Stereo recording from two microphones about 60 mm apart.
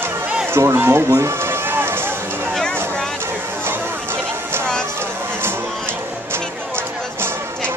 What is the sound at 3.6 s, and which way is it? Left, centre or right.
Music, right.